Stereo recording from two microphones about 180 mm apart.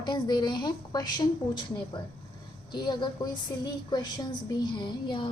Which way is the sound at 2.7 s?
25° left (ahead or behind).